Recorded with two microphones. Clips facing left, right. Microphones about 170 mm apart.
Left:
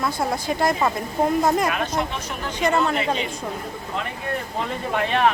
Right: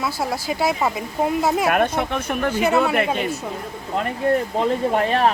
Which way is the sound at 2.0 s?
55° right (ahead or behind).